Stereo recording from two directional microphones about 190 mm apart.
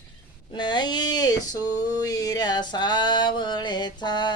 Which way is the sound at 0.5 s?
25° left (ahead or behind).